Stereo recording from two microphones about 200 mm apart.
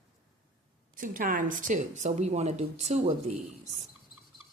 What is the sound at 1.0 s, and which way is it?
A woman's voice, 40° right (ahead or behind).